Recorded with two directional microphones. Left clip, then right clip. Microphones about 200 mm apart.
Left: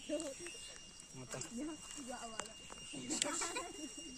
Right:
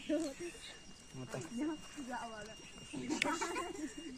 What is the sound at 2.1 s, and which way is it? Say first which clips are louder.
Speech: right 3 dB; 55° left (ahead or behind).